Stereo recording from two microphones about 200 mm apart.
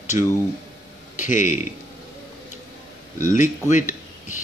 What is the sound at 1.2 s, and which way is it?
Speech, 40° left (ahead or behind).